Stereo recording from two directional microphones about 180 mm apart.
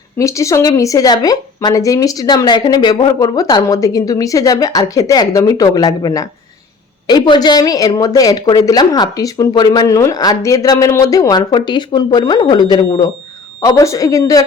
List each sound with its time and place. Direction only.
0.2 s speech: 15° left (ahead or behind)